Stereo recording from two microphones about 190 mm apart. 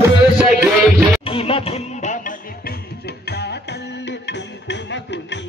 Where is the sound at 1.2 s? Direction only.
30° left (ahead or behind).